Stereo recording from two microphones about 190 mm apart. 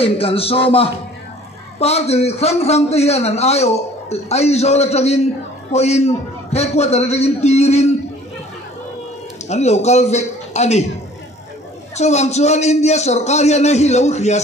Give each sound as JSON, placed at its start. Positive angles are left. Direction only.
{"t": 0.0, "sound": "a man's voice", "side_deg": 30}
{"t": 9.5, "sound": "a man's voice", "side_deg": 35}
{"t": 12.0, "sound": "a man's voice", "side_deg": 35}